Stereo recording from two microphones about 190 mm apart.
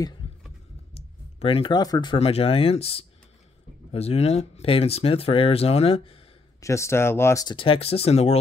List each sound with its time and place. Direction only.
0.9 s speech: 30° left (ahead or behind)
6.6 s speech: 15° left (ahead or behind); by 8.4 s 35° left (ahead or behind)